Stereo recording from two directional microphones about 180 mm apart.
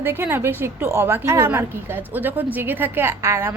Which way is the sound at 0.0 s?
15° right (ahead or behind).